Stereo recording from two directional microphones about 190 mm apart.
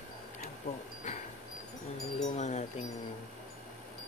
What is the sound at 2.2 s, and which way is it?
Wind chime, 40° left (ahead or behind).